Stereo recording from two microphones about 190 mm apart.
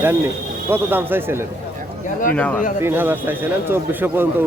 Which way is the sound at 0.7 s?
10° right (ahead or behind).